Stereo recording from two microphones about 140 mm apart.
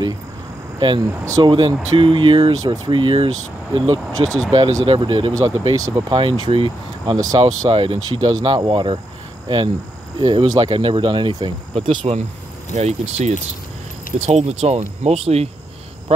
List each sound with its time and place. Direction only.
0.7 s speech: 35° right (ahead or behind)
1.2 s speech: 25° right (ahead or behind)
1.5 s speech: 35° right (ahead or behind)
7.2 s speech: 25° right (ahead or behind)
10.2 s speech: 30° right (ahead or behind)
12.7 s speech: 55° right (ahead or behind)